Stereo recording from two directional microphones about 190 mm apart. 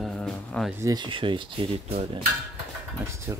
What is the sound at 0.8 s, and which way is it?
Speech, 25° right (ahead or behind).